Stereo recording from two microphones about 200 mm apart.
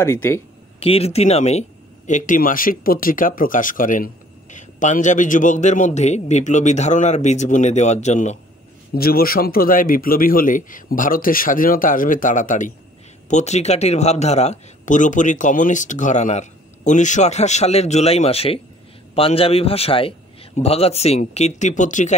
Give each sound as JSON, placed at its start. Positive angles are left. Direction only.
{"t": 0.0, "sound": "speech", "side_deg": 15}
{"t": 0.7, "sound": "speech", "side_deg": 30}
{"t": 8.9, "sound": "a man's voice", "side_deg": 50}